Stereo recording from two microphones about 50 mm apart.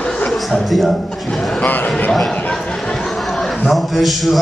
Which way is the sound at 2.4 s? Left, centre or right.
Left.